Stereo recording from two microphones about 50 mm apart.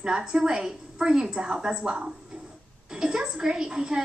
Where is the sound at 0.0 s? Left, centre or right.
Centre.